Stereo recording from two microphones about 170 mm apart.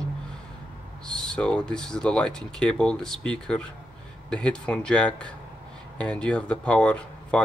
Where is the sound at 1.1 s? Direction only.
5° left (ahead or behind).